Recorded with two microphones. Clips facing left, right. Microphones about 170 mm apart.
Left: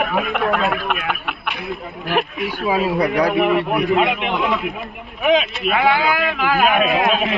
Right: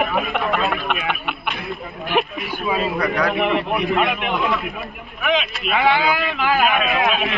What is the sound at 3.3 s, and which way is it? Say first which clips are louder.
Speech: left 3 dB; 5° left (ahead or behind).